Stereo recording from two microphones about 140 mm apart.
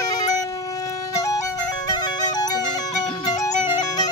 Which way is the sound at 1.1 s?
25° left (ahead or behind).